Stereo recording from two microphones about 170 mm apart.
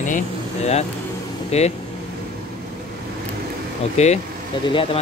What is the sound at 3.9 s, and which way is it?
Speech, 40° left (ahead or behind).